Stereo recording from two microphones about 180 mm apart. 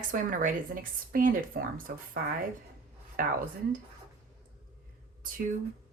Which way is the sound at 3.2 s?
50° right (ahead or behind).